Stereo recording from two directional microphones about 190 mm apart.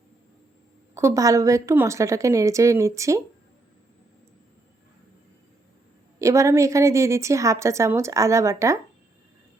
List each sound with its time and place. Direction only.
0.9 s a woman's voice: 15° right (ahead or behind)
6.1 s a woman's voice: 15° right (ahead or behind)